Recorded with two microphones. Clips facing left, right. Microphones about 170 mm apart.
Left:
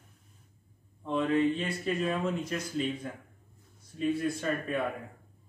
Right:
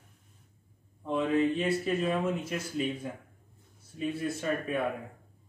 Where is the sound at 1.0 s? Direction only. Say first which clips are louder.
Even; 5° right (ahead or behind).